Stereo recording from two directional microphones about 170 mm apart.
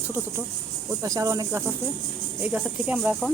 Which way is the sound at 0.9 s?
20° right (ahead or behind).